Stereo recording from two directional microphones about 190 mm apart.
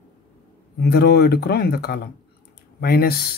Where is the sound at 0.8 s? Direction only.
55° left (ahead or behind).